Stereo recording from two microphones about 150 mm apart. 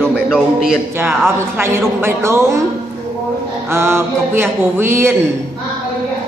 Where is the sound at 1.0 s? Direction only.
15° right (ahead or behind).